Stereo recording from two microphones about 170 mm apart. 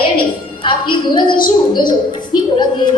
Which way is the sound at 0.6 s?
30° left (ahead or behind).